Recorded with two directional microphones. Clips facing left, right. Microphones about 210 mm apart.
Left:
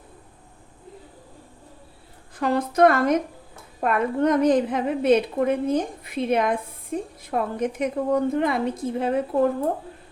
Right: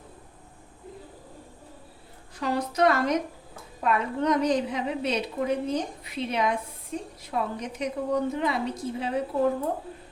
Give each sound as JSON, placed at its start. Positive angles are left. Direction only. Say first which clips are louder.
{"t": 2.4, "sound": "a woman's voice", "louder": "left 6 dB", "side_deg": 55}